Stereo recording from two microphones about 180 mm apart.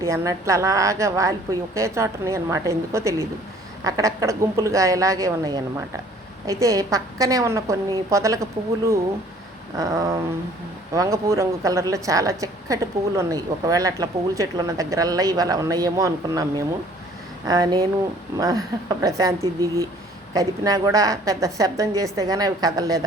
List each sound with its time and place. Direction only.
0.0 s a woman's voice: 15° right (ahead or behind)
9.7 s a woman's voice: 20° right (ahead or behind)